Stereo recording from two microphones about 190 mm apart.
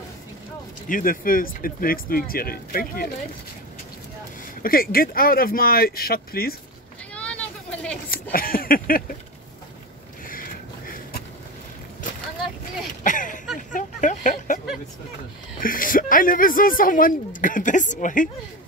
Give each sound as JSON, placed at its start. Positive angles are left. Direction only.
{"t": 0.8, "sound": "speech", "side_deg": 45}
{"t": 4.6, "sound": "speech", "side_deg": 50}
{"t": 8.1, "sound": "speech", "side_deg": 50}
{"t": 10.2, "sound": "a sound", "side_deg": 45}
{"t": 13.0, "sound": "a sound", "side_deg": 45}
{"t": 15.6, "sound": "speech", "side_deg": 45}